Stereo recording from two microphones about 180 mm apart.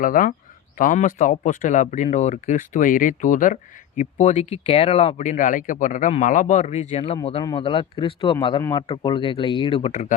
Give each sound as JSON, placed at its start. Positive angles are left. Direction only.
{"t": 0.0, "sound": "a man's voice", "side_deg": 50}